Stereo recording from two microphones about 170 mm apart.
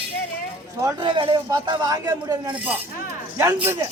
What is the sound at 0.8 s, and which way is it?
A man's voice, 25° right (ahead or behind).